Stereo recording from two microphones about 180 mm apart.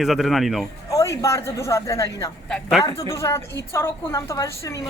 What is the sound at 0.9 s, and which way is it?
A woman's voice, 15° left (ahead or behind).